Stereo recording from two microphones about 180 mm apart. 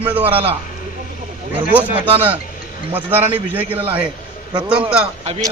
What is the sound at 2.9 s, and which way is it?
A man's voice, 10° right (ahead or behind).